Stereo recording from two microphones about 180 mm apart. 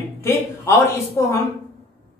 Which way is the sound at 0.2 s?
15° left (ahead or behind).